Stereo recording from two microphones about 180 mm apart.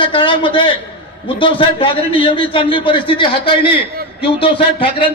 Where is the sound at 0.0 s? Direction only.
25° left (ahead or behind).